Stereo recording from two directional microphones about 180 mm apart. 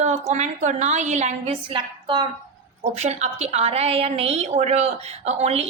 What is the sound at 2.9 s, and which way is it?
A woman's voice, 35° right (ahead or behind).